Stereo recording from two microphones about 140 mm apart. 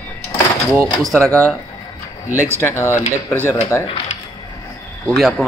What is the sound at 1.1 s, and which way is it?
Speech, 5° left (ahead or behind).